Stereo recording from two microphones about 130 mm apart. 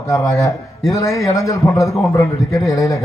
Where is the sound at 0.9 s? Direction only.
25° left (ahead or behind).